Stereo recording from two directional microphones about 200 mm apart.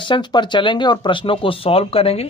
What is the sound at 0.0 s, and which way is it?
Speech, 25° left (ahead or behind).